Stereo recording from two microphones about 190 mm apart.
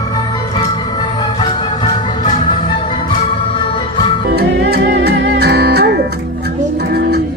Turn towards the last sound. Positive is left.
turn(degrees=-60)  # may be behind; listen again after turning